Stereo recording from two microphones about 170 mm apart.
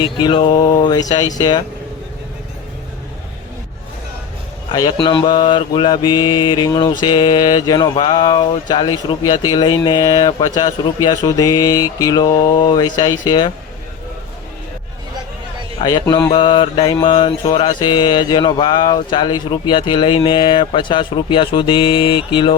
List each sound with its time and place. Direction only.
0.0 s mantra: 30° left (ahead or behind)
4.7 s mantra: 25° left (ahead or behind)
15.8 s mantra: 25° left (ahead or behind)